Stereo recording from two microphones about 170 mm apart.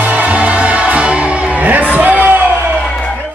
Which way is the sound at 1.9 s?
10° right (ahead or behind).